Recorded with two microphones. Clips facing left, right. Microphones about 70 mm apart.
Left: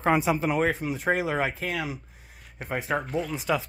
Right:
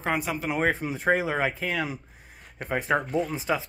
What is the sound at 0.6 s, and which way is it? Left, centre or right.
Speech, right.